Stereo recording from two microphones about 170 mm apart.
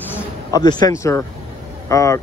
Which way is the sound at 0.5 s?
25° left (ahead or behind).